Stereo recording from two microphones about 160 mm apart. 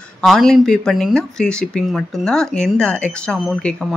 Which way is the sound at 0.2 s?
Centre (ahead or behind).